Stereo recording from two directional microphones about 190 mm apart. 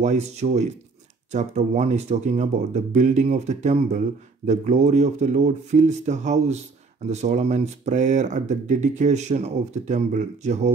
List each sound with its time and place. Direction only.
0.0 s speech: 35° right (ahead or behind)